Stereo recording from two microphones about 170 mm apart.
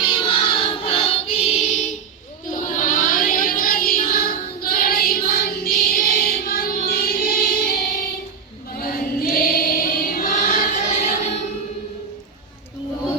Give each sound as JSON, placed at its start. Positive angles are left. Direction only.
{"t": 0.1, "sound": "choir", "side_deg": 30}
{"t": 2.5, "sound": "child singing", "side_deg": 50}
{"t": 8.7, "sound": "choir", "side_deg": 60}